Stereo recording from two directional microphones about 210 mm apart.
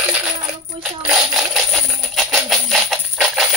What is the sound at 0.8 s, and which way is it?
Music, centre (ahead or behind).